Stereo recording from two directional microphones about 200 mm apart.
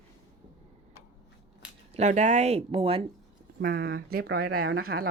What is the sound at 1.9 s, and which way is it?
Speech, 35° right (ahead or behind).